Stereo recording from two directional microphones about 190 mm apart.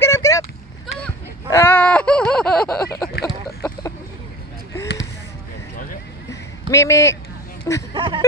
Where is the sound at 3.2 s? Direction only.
20° left (ahead or behind).